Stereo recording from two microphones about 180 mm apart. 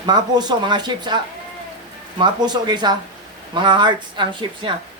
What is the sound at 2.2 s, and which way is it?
Speech, 25° right (ahead or behind).